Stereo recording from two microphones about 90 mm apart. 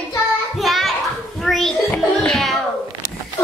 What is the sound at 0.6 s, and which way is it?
Children playing, centre (ahead or behind).